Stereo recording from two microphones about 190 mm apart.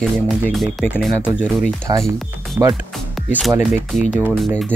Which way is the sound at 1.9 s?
20° right (ahead or behind).